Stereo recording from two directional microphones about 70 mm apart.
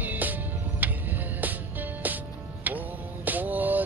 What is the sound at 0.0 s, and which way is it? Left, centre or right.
Music, right.